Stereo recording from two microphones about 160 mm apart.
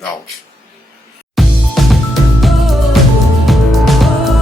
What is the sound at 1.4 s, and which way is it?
Music, centre (ahead or behind).